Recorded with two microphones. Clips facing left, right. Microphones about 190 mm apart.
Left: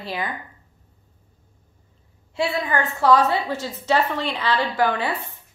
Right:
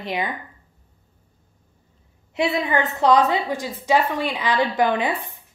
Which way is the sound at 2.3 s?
20° right (ahead or behind).